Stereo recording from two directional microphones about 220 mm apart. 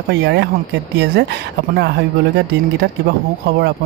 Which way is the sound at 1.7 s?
45° right (ahead or behind).